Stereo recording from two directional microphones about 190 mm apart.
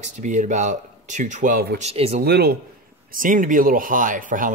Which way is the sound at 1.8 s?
35° right (ahead or behind).